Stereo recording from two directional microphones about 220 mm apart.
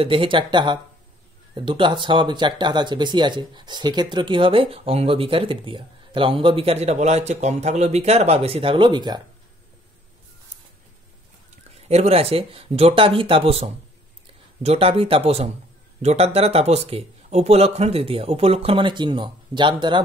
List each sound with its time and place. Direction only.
0.0 s speech: 25° right (ahead or behind)
11.9 s speech: 30° right (ahead or behind)